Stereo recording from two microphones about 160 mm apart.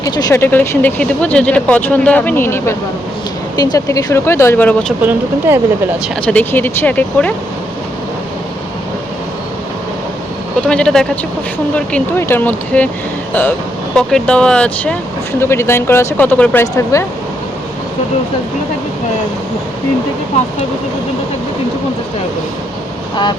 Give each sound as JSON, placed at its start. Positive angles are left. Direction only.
{"t": 0.0, "sound": "speech", "side_deg": 20}
{"t": 5.5, "sound": "speech", "side_deg": -15}
{"t": 6.2, "sound": "speech", "side_deg": 10}
{"t": 10.7, "sound": "speech", "side_deg": 5}
{"t": 13.9, "sound": "speech", "side_deg": 5}